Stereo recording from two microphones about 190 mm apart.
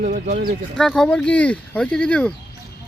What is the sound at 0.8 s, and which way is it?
Speech, 5° left (ahead or behind).